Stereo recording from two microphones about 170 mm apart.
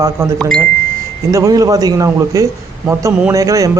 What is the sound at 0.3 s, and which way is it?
Speech, 5° left (ahead or behind).